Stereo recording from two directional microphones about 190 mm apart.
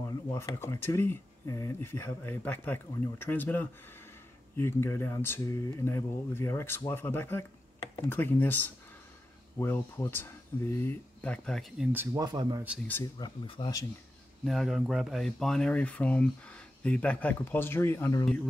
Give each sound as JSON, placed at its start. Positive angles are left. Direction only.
{"t": 0.3, "sound": "speech", "side_deg": 15}
{"t": 11.9, "sound": "speech", "side_deg": -15}
{"t": 13.0, "sound": "speech", "side_deg": 20}
{"t": 14.4, "sound": "speech", "side_deg": 0}